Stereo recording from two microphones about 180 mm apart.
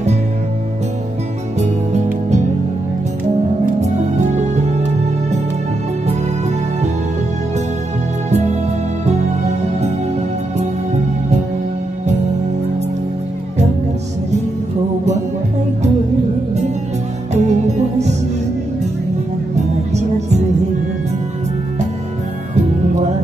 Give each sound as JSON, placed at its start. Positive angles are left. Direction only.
{"t": 3.8, "sound": "music", "side_deg": -40}
{"t": 8.3, "sound": "music", "side_deg": -40}
{"t": 17.3, "sound": "music", "side_deg": -40}
{"t": 19.9, "sound": "music", "side_deg": -40}